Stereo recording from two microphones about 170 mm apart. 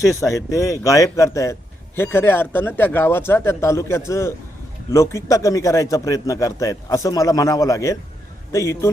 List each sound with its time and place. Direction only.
0.0 s speech: 20° left (ahead or behind)